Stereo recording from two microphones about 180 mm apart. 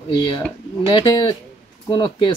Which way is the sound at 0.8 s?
25° left (ahead or behind).